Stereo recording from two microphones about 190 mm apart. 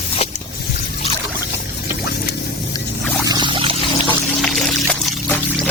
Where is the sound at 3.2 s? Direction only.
25° right (ahead or behind).